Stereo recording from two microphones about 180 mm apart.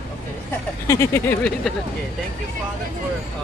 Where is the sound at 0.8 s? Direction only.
15° left (ahead or behind).